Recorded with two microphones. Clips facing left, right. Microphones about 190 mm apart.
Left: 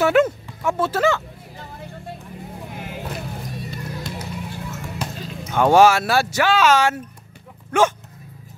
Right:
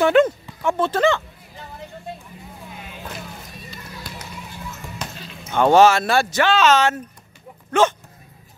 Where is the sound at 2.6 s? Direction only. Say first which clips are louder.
Left 5 dB; 60° left (ahead or behind).